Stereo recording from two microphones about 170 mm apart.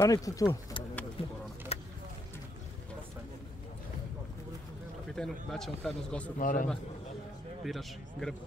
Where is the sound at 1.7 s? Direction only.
35° left (ahead or behind).